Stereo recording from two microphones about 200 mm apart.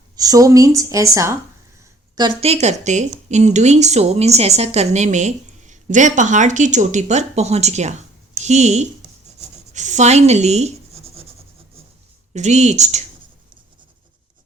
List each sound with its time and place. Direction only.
0.2 s speech: 15° right (ahead or behind)
2.1 s a woman's voice: 25° right (ahead or behind)
9.7 s writing: 35° right (ahead or behind)
12.3 s a woman's voice: 35° right (ahead or behind)